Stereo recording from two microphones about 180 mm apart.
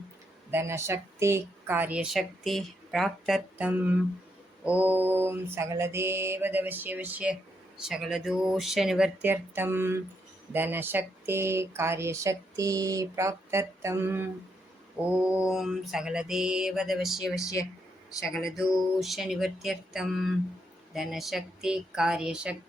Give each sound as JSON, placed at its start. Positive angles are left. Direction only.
{"t": 0.5, "sound": "speech", "side_deg": -15}
{"t": 7.9, "sound": "mantra", "side_deg": 0}
{"t": 10.5, "sound": "speech", "side_deg": -10}
{"t": 15.2, "sound": "mantra", "side_deg": -5}
{"t": 17.4, "sound": "speech", "side_deg": 20}
{"t": 18.3, "sound": "mantra", "side_deg": 0}